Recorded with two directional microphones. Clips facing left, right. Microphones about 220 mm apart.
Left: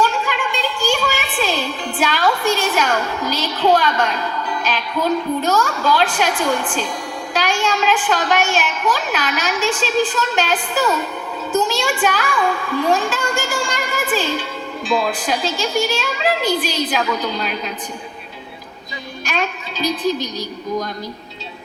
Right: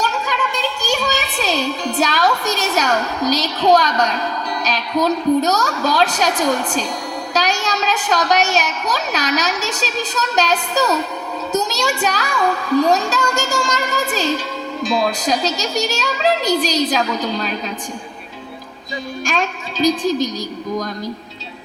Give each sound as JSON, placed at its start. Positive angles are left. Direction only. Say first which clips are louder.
{"t": 0.8, "sound": "a woman's voice", "louder": "left 1 dB", "side_deg": -40}
{"t": 19.2, "sound": "a woman's voice", "louder": "even", "side_deg": -45}